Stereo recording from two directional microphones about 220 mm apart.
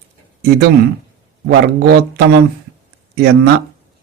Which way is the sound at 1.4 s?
45° right (ahead or behind).